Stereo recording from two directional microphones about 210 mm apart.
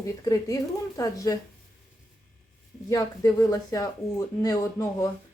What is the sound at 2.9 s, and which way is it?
A woman's voice, 15° left (ahead or behind).